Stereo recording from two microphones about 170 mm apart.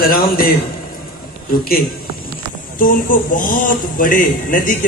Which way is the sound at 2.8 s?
55° left (ahead or behind).